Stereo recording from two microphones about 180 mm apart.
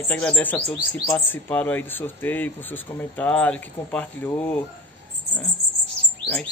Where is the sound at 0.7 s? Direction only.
20° left (ahead or behind).